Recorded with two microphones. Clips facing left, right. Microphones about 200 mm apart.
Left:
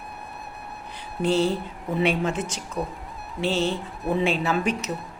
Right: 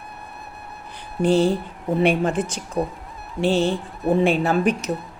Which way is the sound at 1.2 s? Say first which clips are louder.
Right 4 dB; 55° right (ahead or behind).